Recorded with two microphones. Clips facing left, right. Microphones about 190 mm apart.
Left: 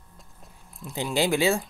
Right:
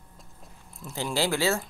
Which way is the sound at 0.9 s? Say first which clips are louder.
Left 3 dB; 20° left (ahead or behind).